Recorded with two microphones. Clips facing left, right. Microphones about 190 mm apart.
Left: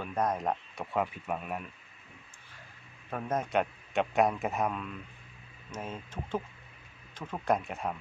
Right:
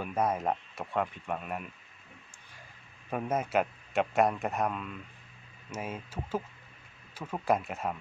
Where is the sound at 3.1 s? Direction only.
10° right (ahead or behind).